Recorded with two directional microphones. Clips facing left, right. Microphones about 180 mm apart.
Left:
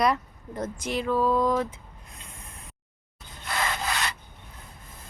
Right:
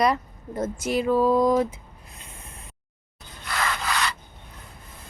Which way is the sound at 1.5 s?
5° right (ahead or behind).